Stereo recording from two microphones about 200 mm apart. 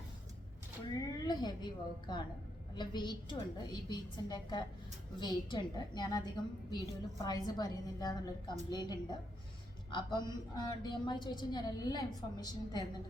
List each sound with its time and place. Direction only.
0.9 s a woman's voice: 20° left (ahead or behind)